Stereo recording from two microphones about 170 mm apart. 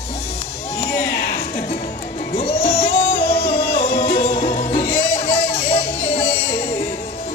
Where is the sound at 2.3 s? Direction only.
35° left (ahead or behind).